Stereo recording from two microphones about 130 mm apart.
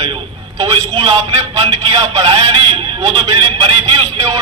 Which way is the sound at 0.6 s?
30° right (ahead or behind).